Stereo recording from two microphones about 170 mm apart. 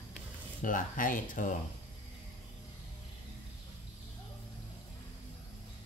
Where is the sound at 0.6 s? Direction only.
50° left (ahead or behind).